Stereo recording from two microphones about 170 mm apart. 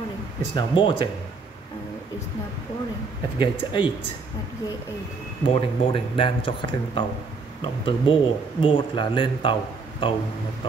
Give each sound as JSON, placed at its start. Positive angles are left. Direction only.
{"t": 0.6, "sound": "speech", "side_deg": 30}
{"t": 3.3, "sound": "speech", "side_deg": 30}
{"t": 5.4, "sound": "speech", "side_deg": 30}